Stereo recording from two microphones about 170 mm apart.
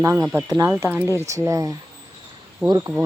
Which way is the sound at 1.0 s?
15° left (ahead or behind).